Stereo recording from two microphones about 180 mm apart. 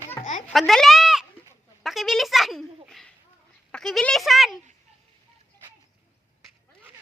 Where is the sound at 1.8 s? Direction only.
Centre (ahead or behind).